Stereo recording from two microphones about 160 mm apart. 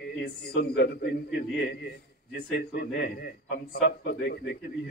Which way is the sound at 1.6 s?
75° left (ahead or behind).